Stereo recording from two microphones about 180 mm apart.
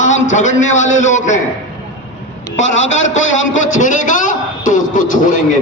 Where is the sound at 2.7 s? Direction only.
90° left.